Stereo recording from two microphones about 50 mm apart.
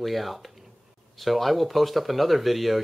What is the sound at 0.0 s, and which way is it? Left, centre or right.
Speech, centre.